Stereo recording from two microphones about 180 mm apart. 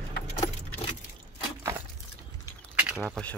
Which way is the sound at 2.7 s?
5° right (ahead or behind).